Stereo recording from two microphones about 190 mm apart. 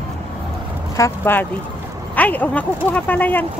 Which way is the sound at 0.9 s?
15° left (ahead or behind).